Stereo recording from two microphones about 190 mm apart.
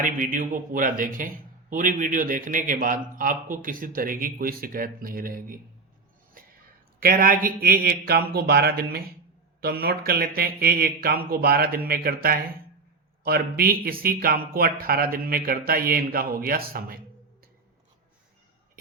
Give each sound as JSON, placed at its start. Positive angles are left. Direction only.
{"t": 0.0, "sound": "a man's voice", "side_deg": -45}
{"t": 7.0, "sound": "a man's voice", "side_deg": -50}